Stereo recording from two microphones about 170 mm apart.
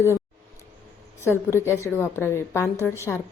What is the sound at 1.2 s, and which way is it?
A woman's voice, 15° left (ahead or behind).